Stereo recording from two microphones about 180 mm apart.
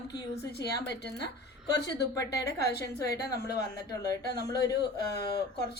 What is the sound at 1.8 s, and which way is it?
A woman's voice, 70° left (ahead or behind).